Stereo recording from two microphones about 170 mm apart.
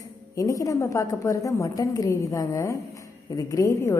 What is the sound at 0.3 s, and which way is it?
A woman's voice, 20° left (ahead or behind).